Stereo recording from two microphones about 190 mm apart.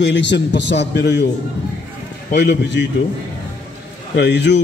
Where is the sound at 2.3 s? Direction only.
65° left (ahead or behind).